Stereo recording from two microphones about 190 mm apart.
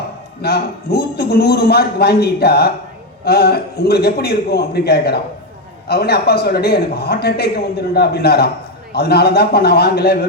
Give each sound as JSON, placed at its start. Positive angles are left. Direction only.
{"t": 0.4, "sound": "a man's voice", "side_deg": 55}